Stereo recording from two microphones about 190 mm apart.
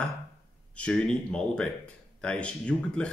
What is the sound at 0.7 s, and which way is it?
Speech, 5° left (ahead or behind).